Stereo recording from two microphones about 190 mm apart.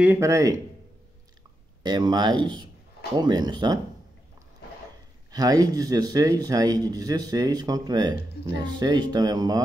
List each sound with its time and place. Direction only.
0.0 s speech: 15° right (ahead or behind)
1.8 s speech: 20° right (ahead or behind)
5.3 s speech: 20° right (ahead or behind)